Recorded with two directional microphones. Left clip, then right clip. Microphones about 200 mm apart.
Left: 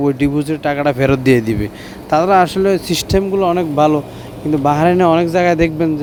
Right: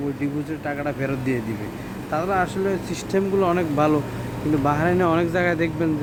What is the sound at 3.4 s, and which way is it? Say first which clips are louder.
Speech: left 7 dB; 25° left (ahead or behind).